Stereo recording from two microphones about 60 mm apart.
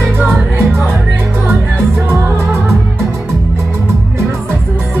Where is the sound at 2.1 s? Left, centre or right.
Right.